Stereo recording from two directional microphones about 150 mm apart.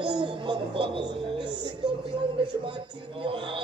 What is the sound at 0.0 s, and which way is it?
Music, 30° right (ahead or behind).